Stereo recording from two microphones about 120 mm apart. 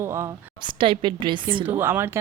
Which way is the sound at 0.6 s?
45° right (ahead or behind).